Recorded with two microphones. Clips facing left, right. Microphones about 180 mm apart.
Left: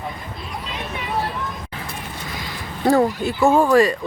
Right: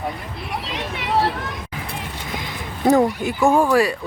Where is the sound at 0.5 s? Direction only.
90° right.